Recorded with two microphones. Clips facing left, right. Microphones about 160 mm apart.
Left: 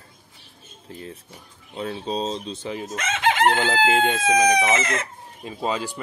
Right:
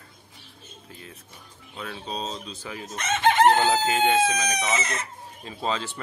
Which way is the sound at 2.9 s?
90° left.